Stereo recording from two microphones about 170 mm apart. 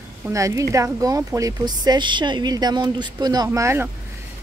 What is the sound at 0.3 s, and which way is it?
Speech, 20° right (ahead or behind).